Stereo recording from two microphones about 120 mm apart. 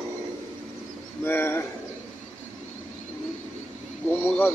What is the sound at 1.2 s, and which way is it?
Speech, 20° left (ahead or behind).